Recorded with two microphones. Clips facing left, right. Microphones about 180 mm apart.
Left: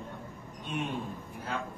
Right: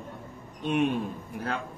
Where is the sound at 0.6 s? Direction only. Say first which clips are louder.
Right 10 dB; 70° right (ahead or behind).